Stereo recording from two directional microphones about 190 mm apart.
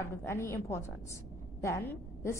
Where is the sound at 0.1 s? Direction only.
15° left (ahead or behind).